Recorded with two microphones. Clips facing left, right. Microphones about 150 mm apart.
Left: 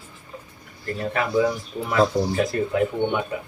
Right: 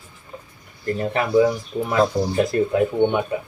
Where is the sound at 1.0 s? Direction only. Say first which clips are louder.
Right 4 dB; 20° right (ahead or behind).